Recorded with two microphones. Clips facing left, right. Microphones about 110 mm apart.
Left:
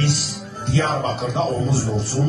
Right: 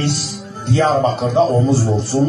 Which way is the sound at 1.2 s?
35° right (ahead or behind).